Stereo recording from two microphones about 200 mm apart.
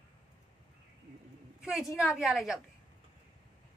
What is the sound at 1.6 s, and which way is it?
Speech, centre (ahead or behind).